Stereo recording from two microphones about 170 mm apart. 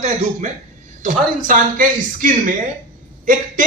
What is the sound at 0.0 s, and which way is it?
A man's voice, 40° right (ahead or behind).